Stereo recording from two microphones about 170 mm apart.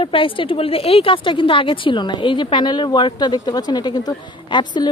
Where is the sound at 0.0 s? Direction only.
30° left (ahead or behind).